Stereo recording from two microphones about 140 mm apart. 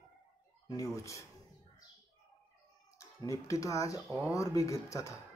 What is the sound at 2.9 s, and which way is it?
Speech, 25° left (ahead or behind).